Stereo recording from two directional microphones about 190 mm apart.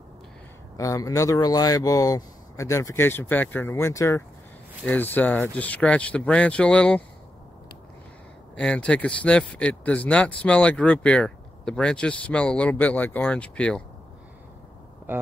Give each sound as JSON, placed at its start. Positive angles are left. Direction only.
{"t": 0.7, "sound": "speech", "side_deg": 15}
{"t": 8.5, "sound": "speech", "side_deg": 5}